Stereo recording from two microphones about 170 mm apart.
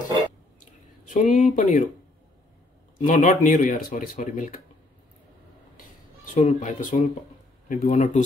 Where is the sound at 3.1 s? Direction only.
50° left (ahead or behind).